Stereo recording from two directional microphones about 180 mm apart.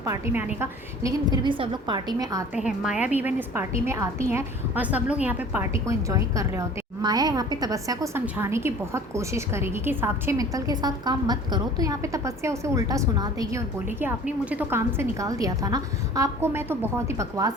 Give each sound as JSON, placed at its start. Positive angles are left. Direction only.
{"t": 0.0, "sound": "a woman's voice", "side_deg": -15}
{"t": 2.6, "sound": "a woman's voice", "side_deg": -5}